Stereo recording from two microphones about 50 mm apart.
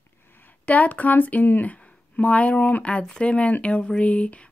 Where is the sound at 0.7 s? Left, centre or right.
Left.